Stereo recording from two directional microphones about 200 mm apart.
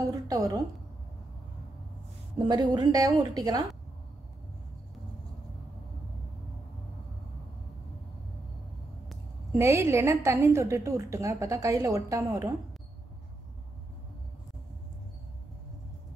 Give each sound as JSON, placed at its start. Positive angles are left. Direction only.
{"t": 0.1, "sound": "a sound", "side_deg": -20}
{"t": 2.4, "sound": "a woman's voice", "side_deg": -20}
{"t": 9.1, "sound": "a woman's voice", "side_deg": -10}